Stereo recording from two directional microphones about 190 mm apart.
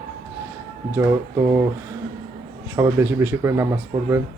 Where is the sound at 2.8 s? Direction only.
15° right (ahead or behind).